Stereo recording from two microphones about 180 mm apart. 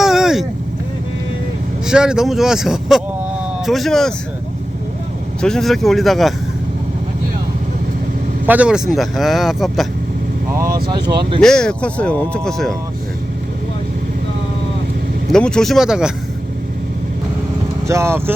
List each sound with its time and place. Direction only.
0.0 s vehicle: centre (ahead or behind)
1.9 s speech: 5° right (ahead or behind)
5.4 s speech: 5° left (ahead or behind)
8.4 s speech: 5° right (ahead or behind)
10.5 s vehicle: 15° right (ahead or behind)
10.8 s speech: 25° right (ahead or behind)
11.3 s speech: 5° left (ahead or behind)
15.3 s speech: 5° left (ahead or behind)
17.8 s speech: 15° right (ahead or behind)